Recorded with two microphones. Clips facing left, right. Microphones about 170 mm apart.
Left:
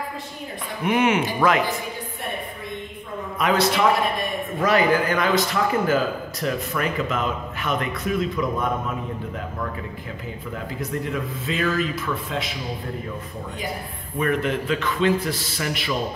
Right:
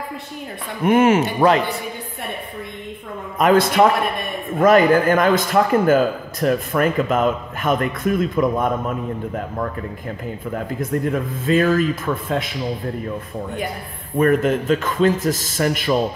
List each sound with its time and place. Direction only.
0.8 s a man's voice: 45° right (ahead or behind)
3.3 s a man's voice: 50° right (ahead or behind)
10.5 s a man's voice: 50° right (ahead or behind)
14.1 s a man's voice: 45° right (ahead or behind)